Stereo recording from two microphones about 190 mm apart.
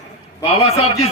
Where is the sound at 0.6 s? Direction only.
30° left (ahead or behind).